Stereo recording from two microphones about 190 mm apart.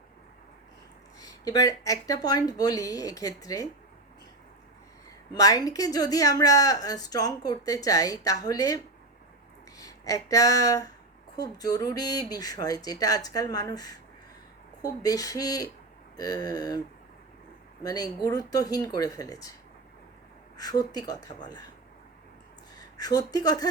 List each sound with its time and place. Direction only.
1.2 s speech: 20° left (ahead or behind)
5.3 s speech: 20° left (ahead or behind)
17.8 s speech: 20° left (ahead or behind)
20.6 s speech: 20° left (ahead or behind)
22.7 s speech: 20° left (ahead or behind)